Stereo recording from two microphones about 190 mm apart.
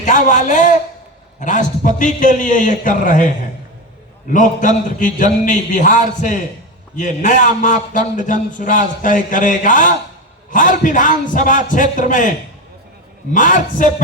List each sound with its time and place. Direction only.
0.0 s a man's voice: 40° left (ahead or behind)
13.3 s a man's voice: 45° left (ahead or behind)